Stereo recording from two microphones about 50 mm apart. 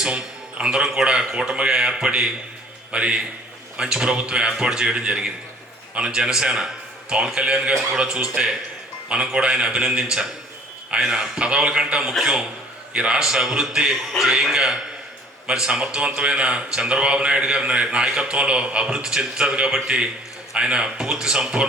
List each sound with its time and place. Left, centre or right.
0.6 s a man's voice: centre